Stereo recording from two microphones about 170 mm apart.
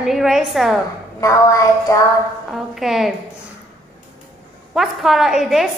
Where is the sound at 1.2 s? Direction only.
20° left (ahead or behind).